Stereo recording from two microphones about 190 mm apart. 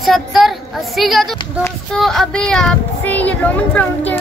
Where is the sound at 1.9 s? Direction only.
Centre (ahead or behind).